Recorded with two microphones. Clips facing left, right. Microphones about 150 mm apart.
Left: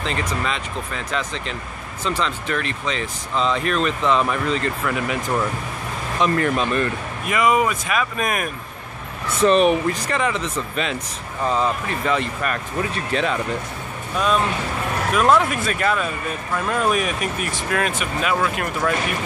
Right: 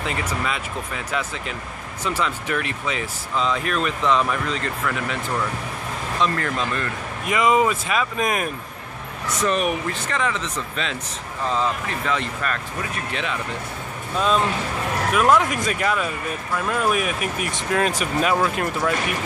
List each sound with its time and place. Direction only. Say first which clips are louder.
0.0 s speech: left 1 dB; 10° right (ahead or behind); by 6.9 s 20° left (ahead or behind)
7.2 s speech: even; 20° right (ahead or behind)
9.3 s speech: left 6 dB; 25° left (ahead or behind)
10.0 s speech: left 2 dB; 5° left (ahead or behind)
12.9 s speech: left 5 dB; 40° left (ahead or behind)
14.1 s speech: even; 25° right (ahead or behind)
15.1 s speech: left 1 dB; 10° right (ahead or behind)
16.5 s speech: left 1 dB; centre (ahead or behind)
17.4 s speech: right 3 dB; 20° right (ahead or behind)